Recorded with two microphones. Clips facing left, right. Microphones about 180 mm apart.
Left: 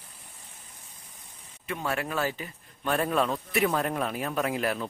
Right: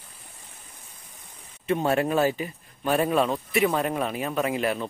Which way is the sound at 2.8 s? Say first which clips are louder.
Right 4 dB; 10° right (ahead or behind).